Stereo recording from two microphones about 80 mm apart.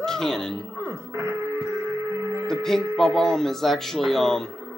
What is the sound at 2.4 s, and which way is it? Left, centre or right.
Hum, centre.